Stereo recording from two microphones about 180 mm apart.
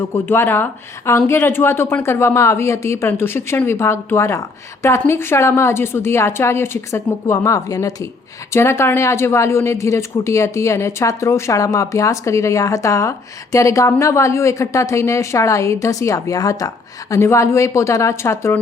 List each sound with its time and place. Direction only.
0.0 s speech: 10° left (ahead or behind)